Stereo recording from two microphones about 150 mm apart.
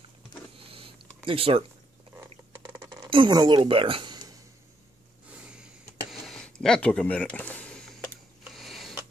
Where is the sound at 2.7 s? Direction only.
25° right (ahead or behind).